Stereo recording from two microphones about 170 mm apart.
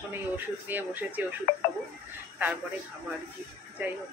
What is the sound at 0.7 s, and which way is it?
Speech, 10° right (ahead or behind).